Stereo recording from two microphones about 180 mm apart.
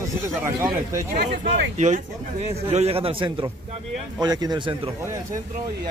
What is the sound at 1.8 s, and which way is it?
A man's voice, 40° right (ahead or behind).